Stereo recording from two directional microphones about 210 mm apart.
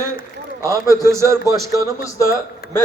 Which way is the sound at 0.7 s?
15° right (ahead or behind).